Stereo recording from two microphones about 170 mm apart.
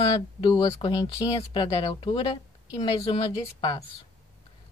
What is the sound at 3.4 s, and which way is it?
Speech, 20° left (ahead or behind).